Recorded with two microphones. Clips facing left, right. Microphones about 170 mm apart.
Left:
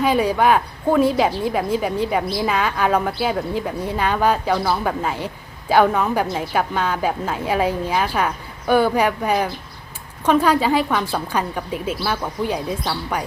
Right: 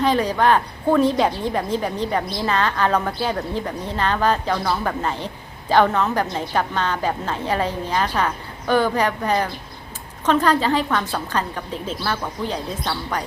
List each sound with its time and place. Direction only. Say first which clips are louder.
0.0 s a woman's voice: left 1 dB; 10° left (ahead or behind)